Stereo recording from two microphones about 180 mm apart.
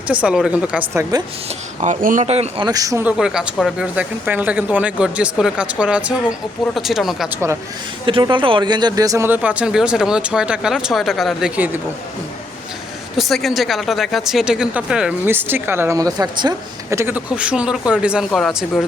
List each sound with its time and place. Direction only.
0.1 s speech: 5° right (ahead or behind)
1.5 s speech: 40° right (ahead or behind)
2.6 s speech: 20° right (ahead or behind); by 7.3 s centre (ahead or behind)
8.0 s speech: 25° right (ahead or behind); by 11.8 s 10° right (ahead or behind)
13.1 s speech: centre (ahead or behind)